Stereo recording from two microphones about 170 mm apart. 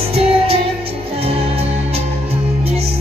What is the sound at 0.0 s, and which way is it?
Music, 35° right (ahead or behind).